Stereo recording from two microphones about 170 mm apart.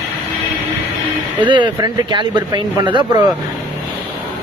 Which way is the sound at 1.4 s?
25° right (ahead or behind).